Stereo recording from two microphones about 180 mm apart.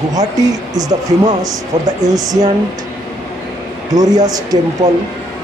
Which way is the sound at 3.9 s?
20° right (ahead or behind).